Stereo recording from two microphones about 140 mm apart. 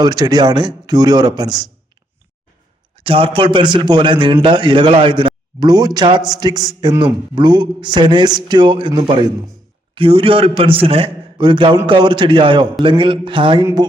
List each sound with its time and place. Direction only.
0.0 s speech: 30° right (ahead or behind)
2.9 s a man's voice: 40° right (ahead or behind)